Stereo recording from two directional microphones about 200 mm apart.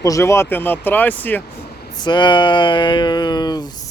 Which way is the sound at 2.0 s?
20° left (ahead or behind).